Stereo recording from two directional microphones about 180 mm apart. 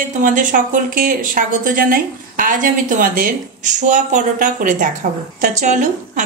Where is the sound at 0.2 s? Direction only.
45° right (ahead or behind).